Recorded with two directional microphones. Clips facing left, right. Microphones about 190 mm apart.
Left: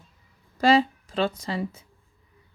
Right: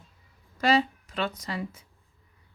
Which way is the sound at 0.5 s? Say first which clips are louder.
Left 4 dB; 30° left (ahead or behind).